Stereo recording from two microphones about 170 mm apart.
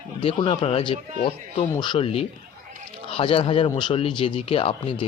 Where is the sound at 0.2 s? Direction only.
35° left (ahead or behind).